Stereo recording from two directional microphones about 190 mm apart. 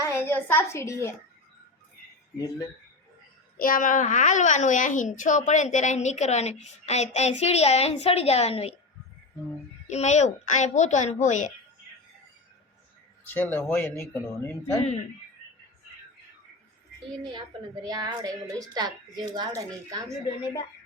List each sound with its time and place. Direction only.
0.0 s a woman's voice: 15° left (ahead or behind)
3.6 s a woman's voice: 45° left (ahead or behind)
9.8 s a woman's voice: 35° left (ahead or behind)
13.2 s speech: 10° left (ahead or behind)
17.8 s a woman's voice: 20° right (ahead or behind)